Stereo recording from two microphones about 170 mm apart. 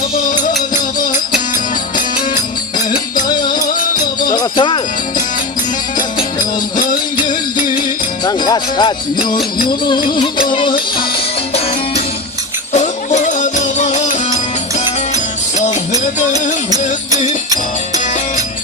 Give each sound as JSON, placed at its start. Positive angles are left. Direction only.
{"t": 0.9, "sound": "music", "side_deg": 55}
{"t": 3.2, "sound": "music", "side_deg": 25}
{"t": 8.2, "sound": "speech", "side_deg": 25}
{"t": 9.1, "sound": "music", "side_deg": 55}
{"t": 10.5, "sound": "music", "side_deg": 30}
{"t": 12.7, "sound": "music", "side_deg": 45}
{"t": 16.6, "sound": "music", "side_deg": -20}
{"t": 17.9, "sound": "music", "side_deg": 45}